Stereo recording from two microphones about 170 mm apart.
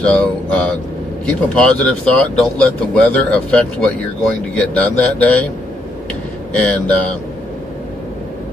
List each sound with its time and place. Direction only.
0.0 s speech: 5° left (ahead or behind)
6.5 s speech: 5° left (ahead or behind)